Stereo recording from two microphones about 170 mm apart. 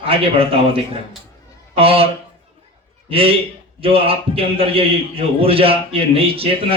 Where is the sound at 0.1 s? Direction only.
35° right (ahead or behind).